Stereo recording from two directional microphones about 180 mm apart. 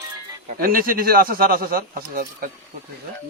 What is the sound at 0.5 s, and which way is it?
A man's voice, 55° right (ahead or behind).